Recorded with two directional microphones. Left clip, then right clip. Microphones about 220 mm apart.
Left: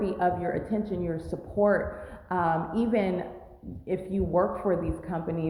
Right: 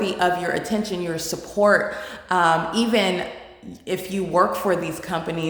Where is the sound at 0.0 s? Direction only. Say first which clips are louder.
Right 6 dB; 15° right (ahead or behind).